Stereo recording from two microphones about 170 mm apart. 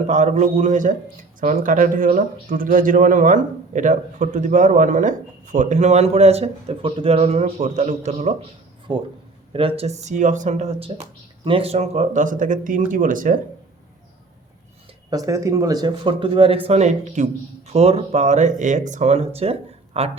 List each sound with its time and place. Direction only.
0.1 s speech: 45° right (ahead or behind)
15.1 s speech: 20° right (ahead or behind); by 20.1 s 35° right (ahead or behind)